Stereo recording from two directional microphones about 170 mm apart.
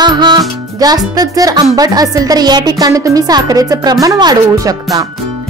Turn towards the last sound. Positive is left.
turn(degrees=-20)  # may be behind; listen again after turning